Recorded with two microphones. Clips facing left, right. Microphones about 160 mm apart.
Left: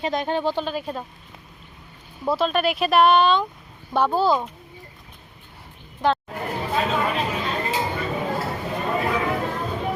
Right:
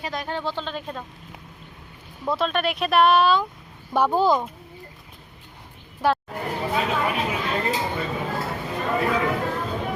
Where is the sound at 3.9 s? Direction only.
15° right (ahead or behind).